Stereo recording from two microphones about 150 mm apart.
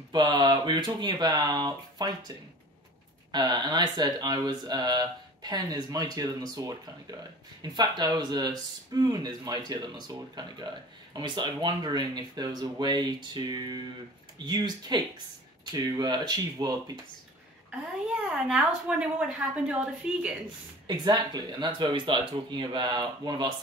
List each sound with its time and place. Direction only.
0.1 s speech: 30° right (ahead or behind)
18.5 s a woman's voice: 5° right (ahead or behind)
20.8 s speech: 30° right (ahead or behind)